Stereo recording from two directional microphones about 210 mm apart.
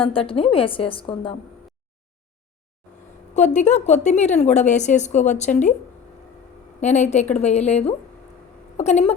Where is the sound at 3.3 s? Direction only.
35° left (ahead or behind).